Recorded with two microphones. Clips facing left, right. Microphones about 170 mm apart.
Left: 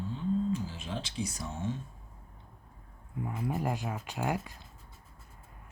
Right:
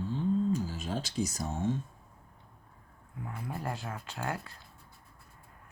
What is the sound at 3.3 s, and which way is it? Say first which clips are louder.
Speech: left 5 dB; 20° left (ahead or behind).